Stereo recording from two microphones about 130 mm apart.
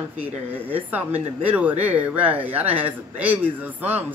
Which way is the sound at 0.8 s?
15° right (ahead or behind).